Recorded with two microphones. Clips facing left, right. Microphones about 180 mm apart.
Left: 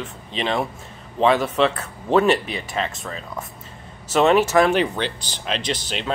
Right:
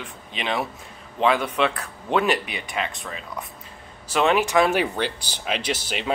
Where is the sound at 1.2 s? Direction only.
30° left (ahead or behind).